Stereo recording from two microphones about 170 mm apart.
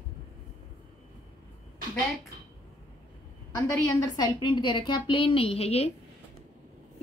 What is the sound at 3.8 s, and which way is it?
A woman's voice, 25° left (ahead or behind).